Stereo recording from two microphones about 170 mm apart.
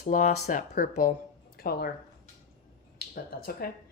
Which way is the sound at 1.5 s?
65° left (ahead or behind).